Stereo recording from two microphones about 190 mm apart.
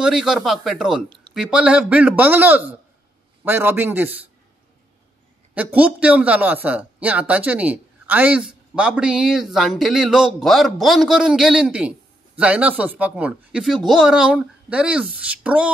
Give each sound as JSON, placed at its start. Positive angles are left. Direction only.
{"t": 0.0, "sound": "speech", "side_deg": -5}
{"t": 5.5, "sound": "speech", "side_deg": -10}